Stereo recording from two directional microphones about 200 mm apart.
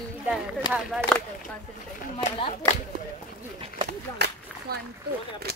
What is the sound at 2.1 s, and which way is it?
Speech, 25° left (ahead or behind).